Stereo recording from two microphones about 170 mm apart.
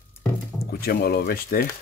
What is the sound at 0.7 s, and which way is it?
Speech, 65° left (ahead or behind).